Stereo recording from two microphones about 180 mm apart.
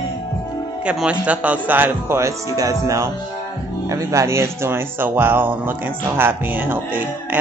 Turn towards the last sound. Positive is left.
turn(degrees=-10)  # may be behind; listen again after turning